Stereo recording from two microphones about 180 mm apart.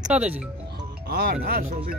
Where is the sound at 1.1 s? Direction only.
55° right (ahead or behind).